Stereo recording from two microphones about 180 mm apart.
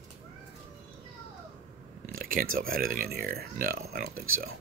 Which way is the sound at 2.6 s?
55° right (ahead or behind).